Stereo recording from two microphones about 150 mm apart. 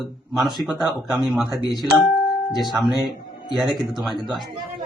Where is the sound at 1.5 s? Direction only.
30° left (ahead or behind).